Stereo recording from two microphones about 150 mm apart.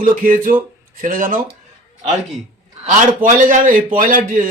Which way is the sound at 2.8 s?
60° right (ahead or behind).